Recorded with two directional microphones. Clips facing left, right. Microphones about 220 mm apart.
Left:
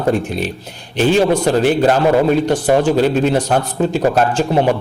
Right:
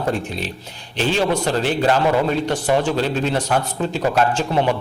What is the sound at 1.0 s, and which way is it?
A man's voice, 50° left (ahead or behind).